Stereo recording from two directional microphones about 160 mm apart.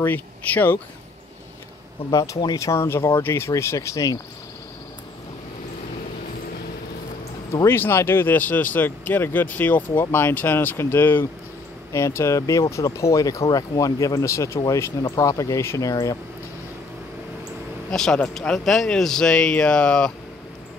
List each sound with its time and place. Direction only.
0.0 s speech: 10° left (ahead or behind)
2.0 s speech: 20° left (ahead or behind)
7.5 s speech: 15° left (ahead or behind)
17.9 s speech: 5° left (ahead or behind)